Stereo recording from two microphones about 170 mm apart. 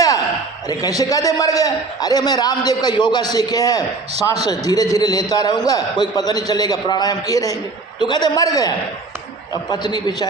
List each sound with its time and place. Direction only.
0.7 s a man's voice: 20° left (ahead or behind)